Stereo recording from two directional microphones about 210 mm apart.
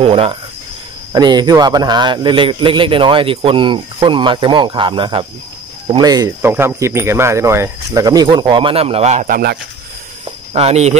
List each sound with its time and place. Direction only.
0.0 s a man's voice: 25° right (ahead or behind)
10.5 s speech: 30° right (ahead or behind)